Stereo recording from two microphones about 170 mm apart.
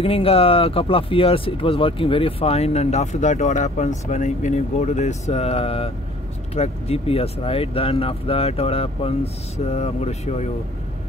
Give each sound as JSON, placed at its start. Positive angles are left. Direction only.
{"t": 0.0, "sound": "speech", "side_deg": 35}